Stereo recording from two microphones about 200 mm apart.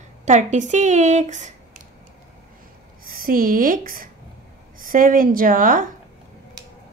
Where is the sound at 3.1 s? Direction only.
45° right (ahead or behind).